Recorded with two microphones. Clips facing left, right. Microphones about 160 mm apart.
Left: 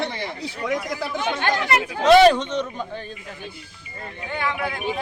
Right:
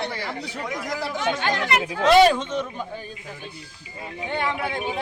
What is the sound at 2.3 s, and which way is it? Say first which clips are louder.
Speech: left 4 dB; 5° right (ahead or behind).